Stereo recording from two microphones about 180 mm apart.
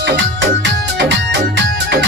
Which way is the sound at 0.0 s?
85° right.